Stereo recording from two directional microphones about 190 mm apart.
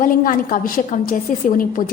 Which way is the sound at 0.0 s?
45° left (ahead or behind).